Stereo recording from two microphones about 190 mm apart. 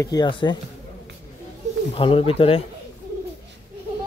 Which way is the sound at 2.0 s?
30° left (ahead or behind).